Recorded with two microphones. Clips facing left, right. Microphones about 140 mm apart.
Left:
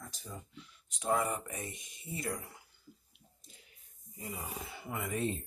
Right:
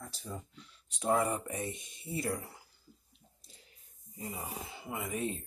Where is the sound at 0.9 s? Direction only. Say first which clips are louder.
Right 2 dB; 30° right (ahead or behind).